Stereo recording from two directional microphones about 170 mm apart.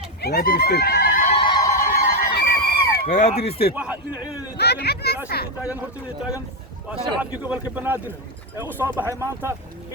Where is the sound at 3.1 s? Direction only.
45° left (ahead or behind).